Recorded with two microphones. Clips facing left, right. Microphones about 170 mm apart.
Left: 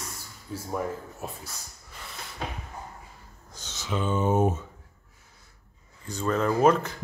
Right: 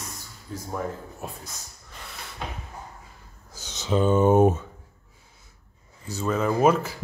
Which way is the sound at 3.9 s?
40° right (ahead or behind).